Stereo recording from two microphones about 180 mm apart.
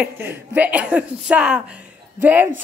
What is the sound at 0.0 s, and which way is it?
A woman's voice, 10° right (ahead or behind).